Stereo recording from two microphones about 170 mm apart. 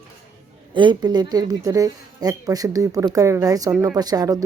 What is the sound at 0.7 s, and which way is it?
A woman's voice, 25° right (ahead or behind).